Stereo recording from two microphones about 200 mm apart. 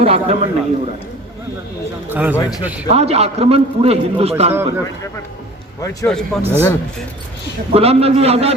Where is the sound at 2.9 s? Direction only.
30° right (ahead or behind).